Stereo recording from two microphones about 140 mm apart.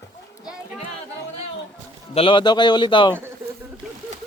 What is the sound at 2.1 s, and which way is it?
Speech, 40° left (ahead or behind).